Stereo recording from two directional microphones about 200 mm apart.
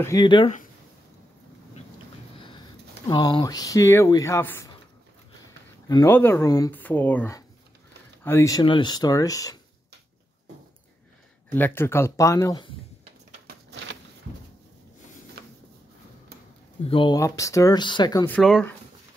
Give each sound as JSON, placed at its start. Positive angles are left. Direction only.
{"t": 0.0, "sound": "speech", "side_deg": 20}
{"t": 3.1, "sound": "speech", "side_deg": 20}
{"t": 5.9, "sound": "speech", "side_deg": 15}
{"t": 11.5, "sound": "speech", "side_deg": 10}
{"t": 13.5, "sound": "a sound", "side_deg": -55}
{"t": 16.8, "sound": "speech", "side_deg": 25}
{"t": 18.3, "sound": "speech", "side_deg": 5}